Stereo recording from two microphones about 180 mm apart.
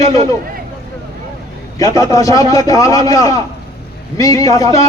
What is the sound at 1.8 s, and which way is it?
A man's voice, 20° left (ahead or behind).